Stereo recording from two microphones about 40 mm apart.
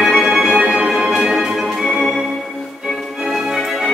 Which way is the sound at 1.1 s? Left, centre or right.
Centre.